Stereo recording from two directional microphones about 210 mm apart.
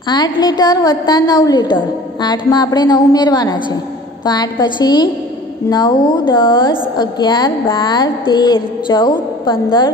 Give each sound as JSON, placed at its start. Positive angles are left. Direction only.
{"t": 0.1, "sound": "a woman's voice", "side_deg": 20}